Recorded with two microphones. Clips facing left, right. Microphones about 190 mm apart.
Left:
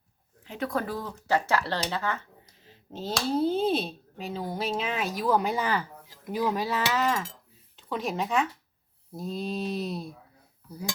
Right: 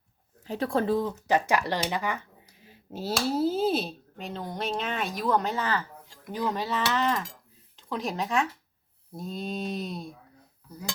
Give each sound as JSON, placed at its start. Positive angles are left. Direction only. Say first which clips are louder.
{"t": 0.4, "sound": "speech", "louder": "right 4 dB", "side_deg": -35}